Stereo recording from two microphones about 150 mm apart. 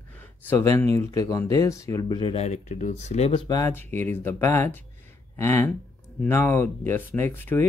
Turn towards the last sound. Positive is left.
turn(degrees=15)  # may be behind; listen again after turning